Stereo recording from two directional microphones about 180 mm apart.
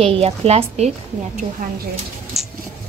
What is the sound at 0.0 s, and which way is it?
Speech, 30° right (ahead or behind).